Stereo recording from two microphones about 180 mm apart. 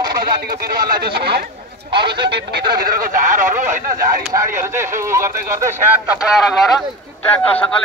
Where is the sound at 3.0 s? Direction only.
50° right (ahead or behind).